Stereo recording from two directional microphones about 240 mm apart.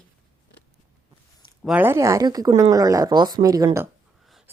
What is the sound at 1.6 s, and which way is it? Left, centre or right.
A woman's voice, centre.